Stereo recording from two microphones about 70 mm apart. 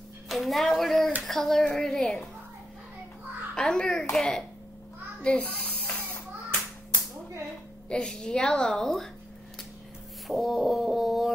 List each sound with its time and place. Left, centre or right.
0.3 s a woman's voice: centre
3.5 s a woman's voice: centre
7.9 s a woman's voice: centre
10.2 s a sound: centre